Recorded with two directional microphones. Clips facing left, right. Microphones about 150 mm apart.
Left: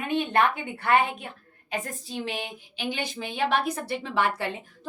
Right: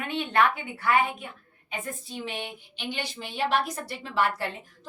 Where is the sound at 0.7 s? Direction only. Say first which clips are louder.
Left 2 dB; 65° left (ahead or behind).